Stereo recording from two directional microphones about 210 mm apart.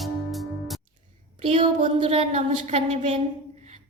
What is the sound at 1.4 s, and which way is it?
A woman's voice, 25° right (ahead or behind).